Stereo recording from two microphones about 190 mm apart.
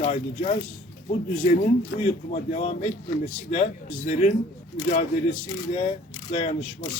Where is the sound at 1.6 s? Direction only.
35° left (ahead or behind).